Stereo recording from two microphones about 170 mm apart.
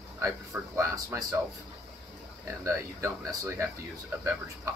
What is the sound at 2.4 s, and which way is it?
Speech, 15° right (ahead or behind).